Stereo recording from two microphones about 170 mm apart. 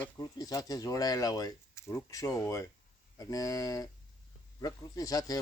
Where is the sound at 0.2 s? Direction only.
20° left (ahead or behind).